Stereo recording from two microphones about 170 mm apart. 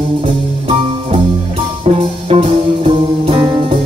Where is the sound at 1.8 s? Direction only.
40° right (ahead or behind).